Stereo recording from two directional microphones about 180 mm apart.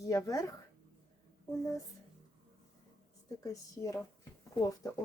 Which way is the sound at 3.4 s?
20° left (ahead or behind).